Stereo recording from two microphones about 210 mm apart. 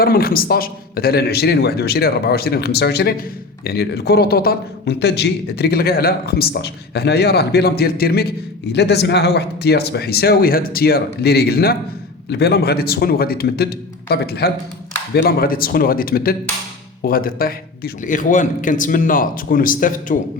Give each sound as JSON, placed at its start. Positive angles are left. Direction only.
{"t": 0.0, "sound": "a man's voice", "side_deg": 45}